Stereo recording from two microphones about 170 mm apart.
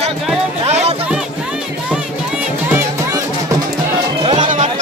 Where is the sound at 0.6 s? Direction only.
40° right (ahead or behind).